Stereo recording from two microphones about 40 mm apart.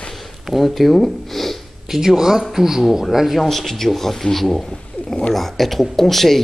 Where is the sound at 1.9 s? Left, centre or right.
Centre.